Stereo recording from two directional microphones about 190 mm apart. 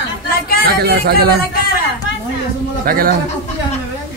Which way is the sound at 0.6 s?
55° right (ahead or behind).